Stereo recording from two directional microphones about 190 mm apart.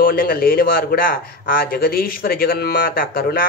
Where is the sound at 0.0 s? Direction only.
50° left (ahead or behind).